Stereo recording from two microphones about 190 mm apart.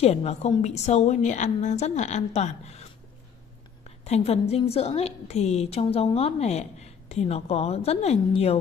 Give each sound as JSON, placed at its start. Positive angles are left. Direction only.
{"t": 0.0, "sound": "a woman's voice", "side_deg": 35}